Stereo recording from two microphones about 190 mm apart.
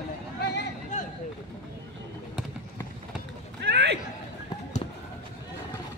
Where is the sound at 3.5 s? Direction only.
65° right (ahead or behind).